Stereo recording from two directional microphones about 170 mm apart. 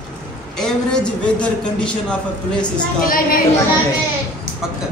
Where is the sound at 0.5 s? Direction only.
5° left (ahead or behind).